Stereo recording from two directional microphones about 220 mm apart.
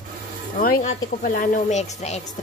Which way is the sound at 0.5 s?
40° left (ahead or behind).